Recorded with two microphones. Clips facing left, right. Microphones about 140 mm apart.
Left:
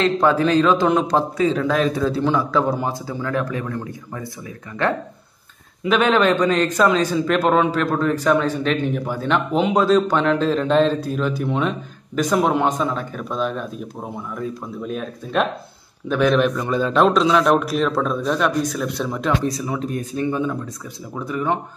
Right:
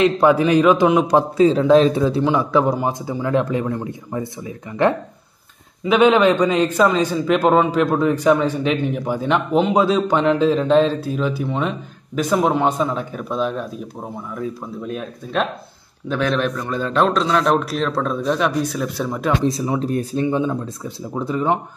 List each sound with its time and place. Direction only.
0.0 s a man's voice: 15° right (ahead or behind)
1.4 s speech: 30° right (ahead or behind)
2.0 s a man's voice: 15° right (ahead or behind)
5.9 s a man's voice: 10° right (ahead or behind)
19.4 s speech: 25° right (ahead or behind)
20.2 s speech: 20° right (ahead or behind)